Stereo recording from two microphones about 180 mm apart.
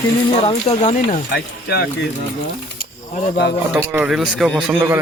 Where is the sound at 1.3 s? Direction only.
60° left (ahead or behind).